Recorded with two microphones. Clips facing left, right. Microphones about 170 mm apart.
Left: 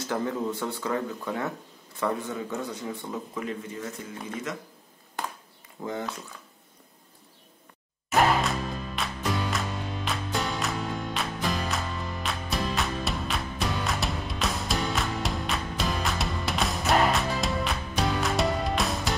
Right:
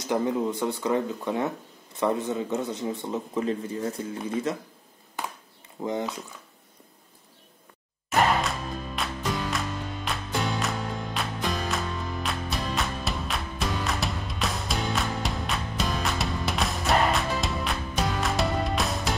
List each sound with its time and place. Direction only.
0.0 s a man's voice: 15° right (ahead or behind)
5.8 s a man's voice: 20° right (ahead or behind)
8.1 s music: centre (ahead or behind)